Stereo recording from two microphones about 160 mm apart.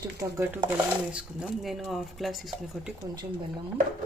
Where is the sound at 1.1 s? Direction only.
5° right (ahead or behind).